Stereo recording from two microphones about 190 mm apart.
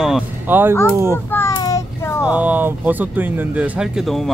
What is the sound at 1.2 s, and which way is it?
Child singing, 15° left (ahead or behind).